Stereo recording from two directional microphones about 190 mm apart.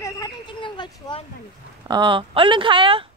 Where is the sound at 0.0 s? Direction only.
20° left (ahead or behind).